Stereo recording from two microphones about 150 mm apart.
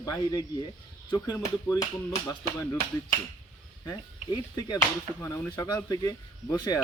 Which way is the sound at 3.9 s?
25° left (ahead or behind).